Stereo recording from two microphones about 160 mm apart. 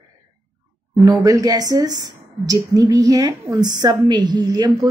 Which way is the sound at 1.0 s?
25° right (ahead or behind).